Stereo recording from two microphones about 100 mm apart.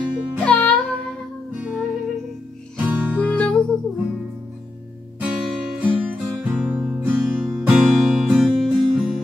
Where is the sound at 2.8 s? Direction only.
15° right (ahead or behind).